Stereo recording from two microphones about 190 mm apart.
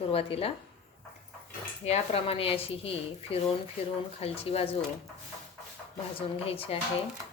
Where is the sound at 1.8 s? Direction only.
35° left (ahead or behind).